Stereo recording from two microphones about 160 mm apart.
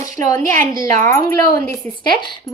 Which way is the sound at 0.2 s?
20° left (ahead or behind).